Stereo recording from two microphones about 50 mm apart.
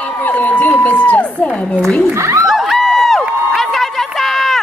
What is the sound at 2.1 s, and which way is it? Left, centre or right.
Speech, right.